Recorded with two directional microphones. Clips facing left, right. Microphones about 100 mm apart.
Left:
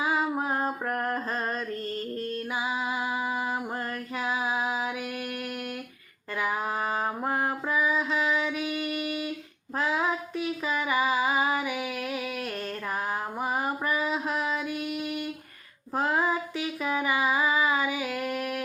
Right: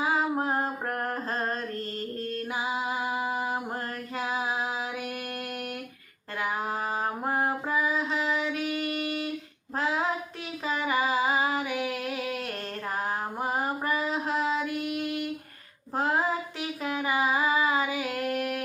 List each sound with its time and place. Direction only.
3.0 s music: 30° right (ahead or behind)
7.3 s music: 25° right (ahead or behind)
10.8 s female singing: 30° right (ahead or behind)
17.0 s music: 30° right (ahead or behind)